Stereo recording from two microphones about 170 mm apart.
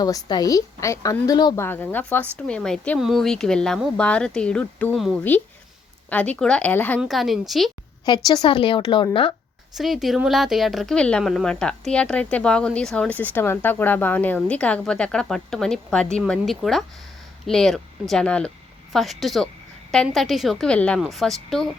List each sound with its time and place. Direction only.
0.0 s a woman's voice: 25° left (ahead or behind)
1.6 s speech: 10° left (ahead or behind)
7.0 s speech: centre (ahead or behind)
8.0 s a woman's voice: 25° left (ahead or behind)
9.7 s speech: centre (ahead or behind)